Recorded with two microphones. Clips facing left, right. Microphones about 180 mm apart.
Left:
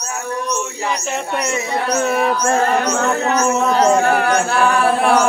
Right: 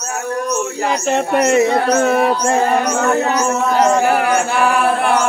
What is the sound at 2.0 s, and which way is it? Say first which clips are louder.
Speech: even; 35° right (ahead or behind).